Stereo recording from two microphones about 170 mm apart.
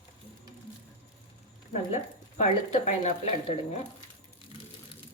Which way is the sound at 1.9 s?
40° left (ahead or behind).